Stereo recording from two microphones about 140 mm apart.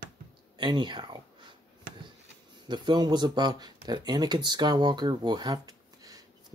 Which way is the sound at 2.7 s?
30° right (ahead or behind).